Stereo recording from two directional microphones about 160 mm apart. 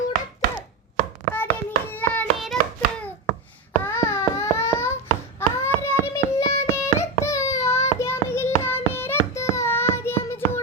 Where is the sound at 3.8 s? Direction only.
15° left (ahead or behind).